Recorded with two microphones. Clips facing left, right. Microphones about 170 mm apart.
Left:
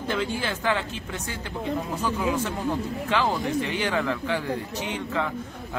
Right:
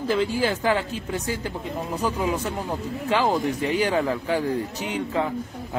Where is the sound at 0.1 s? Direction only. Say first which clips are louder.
Right 5 dB; 35° right (ahead or behind).